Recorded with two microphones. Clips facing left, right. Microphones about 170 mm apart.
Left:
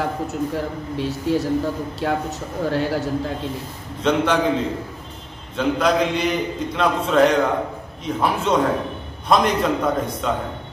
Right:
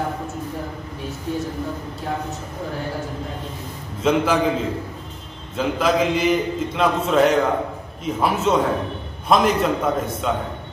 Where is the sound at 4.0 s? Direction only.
5° right (ahead or behind).